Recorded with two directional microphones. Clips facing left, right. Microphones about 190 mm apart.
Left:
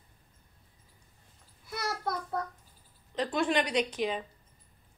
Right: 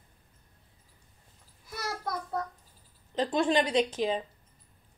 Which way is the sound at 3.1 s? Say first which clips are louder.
Right 3 dB; 30° right (ahead or behind).